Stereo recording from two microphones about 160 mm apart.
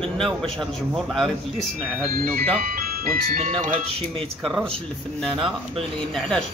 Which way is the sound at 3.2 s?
55° right (ahead or behind).